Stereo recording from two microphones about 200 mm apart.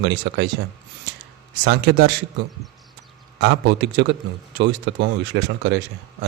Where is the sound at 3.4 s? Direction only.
60° right (ahead or behind).